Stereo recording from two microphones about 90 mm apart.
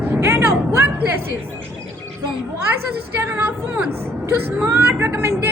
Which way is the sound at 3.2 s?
25° right (ahead or behind).